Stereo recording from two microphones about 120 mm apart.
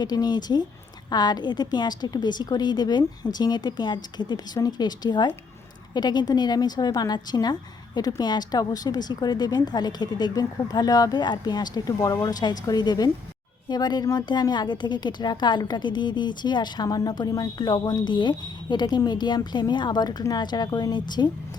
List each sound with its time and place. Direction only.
0.0 s speech: 35° left (ahead or behind)